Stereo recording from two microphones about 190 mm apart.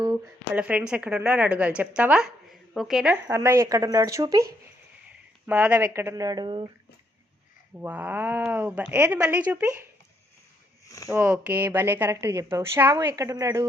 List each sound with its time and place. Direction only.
0.3 s speech: 5° right (ahead or behind)
5.5 s speech: 10° right (ahead or behind); by 6.7 s 25° right (ahead or behind)
7.8 s speech: 10° right (ahead or behind)
10.8 s speech: 15° left (ahead or behind)
11.1 s speech: 10° right (ahead or behind)